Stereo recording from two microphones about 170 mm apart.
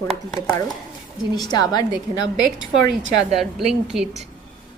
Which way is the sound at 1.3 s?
25° left (ahead or behind).